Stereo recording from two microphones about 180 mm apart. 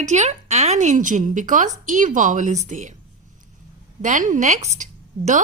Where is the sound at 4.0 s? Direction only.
45° right (ahead or behind).